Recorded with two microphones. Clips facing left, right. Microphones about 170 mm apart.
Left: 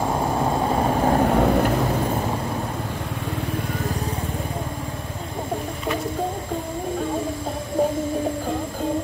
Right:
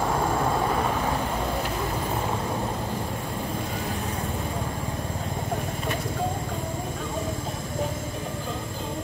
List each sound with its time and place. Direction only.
1.0 s vehicle: 55° left (ahead or behind)